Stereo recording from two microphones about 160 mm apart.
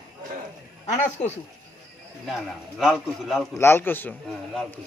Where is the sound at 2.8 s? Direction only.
Centre (ahead or behind).